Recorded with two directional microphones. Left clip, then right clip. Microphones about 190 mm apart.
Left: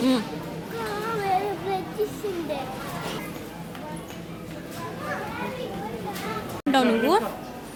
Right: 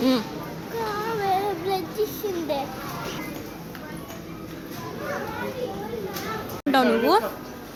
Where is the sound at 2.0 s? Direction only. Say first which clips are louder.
Right 1 dB; 50° right (ahead or behind).